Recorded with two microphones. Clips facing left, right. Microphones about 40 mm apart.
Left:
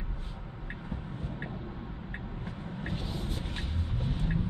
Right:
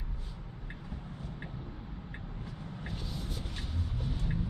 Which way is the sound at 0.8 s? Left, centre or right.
Left.